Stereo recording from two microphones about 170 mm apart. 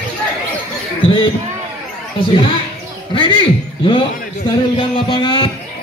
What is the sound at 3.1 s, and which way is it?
A man's voice, 30° left (ahead or behind).